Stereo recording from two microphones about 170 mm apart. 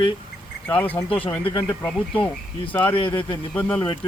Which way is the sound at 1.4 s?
30° left (ahead or behind).